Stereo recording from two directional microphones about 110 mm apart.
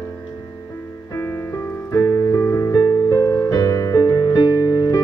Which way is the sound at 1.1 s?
25° left (ahead or behind).